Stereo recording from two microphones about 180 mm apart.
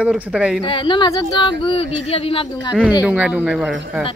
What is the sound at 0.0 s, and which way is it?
Speech, 5° right (ahead or behind).